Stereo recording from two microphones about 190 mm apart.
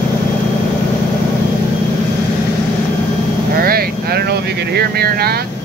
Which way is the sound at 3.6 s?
50° right (ahead or behind).